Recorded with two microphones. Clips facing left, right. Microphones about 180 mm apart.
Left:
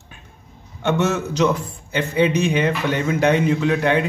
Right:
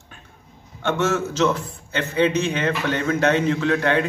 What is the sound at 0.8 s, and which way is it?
A man's voice, 15° left (ahead or behind).